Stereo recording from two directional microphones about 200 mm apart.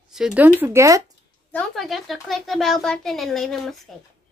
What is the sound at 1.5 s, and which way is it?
A child's voice, centre (ahead or behind).